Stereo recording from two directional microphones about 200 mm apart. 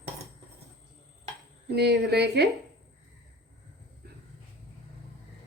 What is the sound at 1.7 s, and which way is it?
Speech, 55° right (ahead or behind).